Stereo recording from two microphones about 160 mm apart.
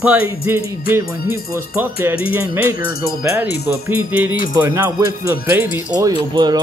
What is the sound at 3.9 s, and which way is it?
Speech, 15° right (ahead or behind).